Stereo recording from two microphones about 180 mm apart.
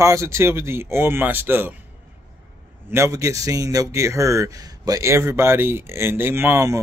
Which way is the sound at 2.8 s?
15° right (ahead or behind).